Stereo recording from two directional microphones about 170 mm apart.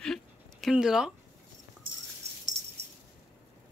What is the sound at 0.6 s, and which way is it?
Speech, 5° right (ahead or behind).